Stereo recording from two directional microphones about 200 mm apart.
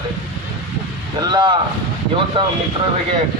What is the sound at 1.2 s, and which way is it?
Speech, 20° right (ahead or behind).